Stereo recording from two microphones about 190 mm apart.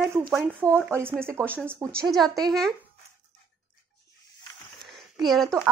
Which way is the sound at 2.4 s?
Centre (ahead or behind).